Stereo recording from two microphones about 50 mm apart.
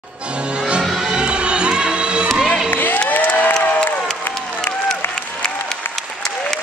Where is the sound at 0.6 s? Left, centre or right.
Centre.